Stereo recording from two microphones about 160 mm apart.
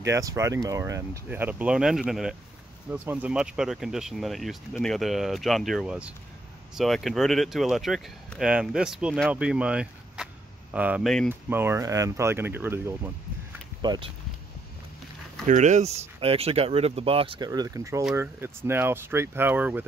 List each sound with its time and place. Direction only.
0.0 s speech: 20° right (ahead or behind)
11.1 s speech: 5° left (ahead or behind)
11.4 s speech: 15° right (ahead or behind)
13.7 s speech: 25° right (ahead or behind)
15.4 s speech: 50° right (ahead or behind)
17.5 s speech: 20° right (ahead or behind)